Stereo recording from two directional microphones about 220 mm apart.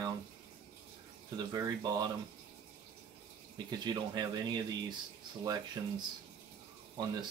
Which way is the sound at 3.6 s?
20° right (ahead or behind).